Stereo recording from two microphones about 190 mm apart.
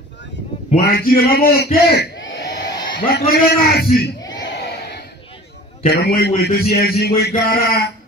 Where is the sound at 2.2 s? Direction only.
70° left (ahead or behind).